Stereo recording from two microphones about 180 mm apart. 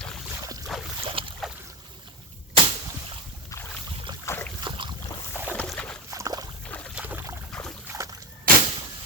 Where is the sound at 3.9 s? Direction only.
30° right (ahead or behind).